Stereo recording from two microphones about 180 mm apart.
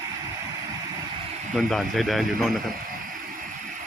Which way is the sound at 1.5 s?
Centre (ahead or behind).